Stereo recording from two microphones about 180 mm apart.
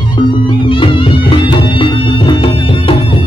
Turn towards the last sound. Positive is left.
turn(degrees=30)  # may be behind; listen again after turning